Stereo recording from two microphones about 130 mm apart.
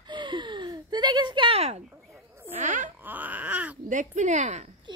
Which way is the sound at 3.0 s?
15° right (ahead or behind).